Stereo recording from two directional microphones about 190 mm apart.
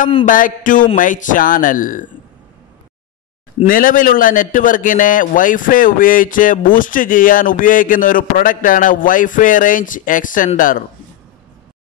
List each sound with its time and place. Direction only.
0.2 s a man's voice: 45° left (ahead or behind)
3.6 s a man's voice: 45° left (ahead or behind)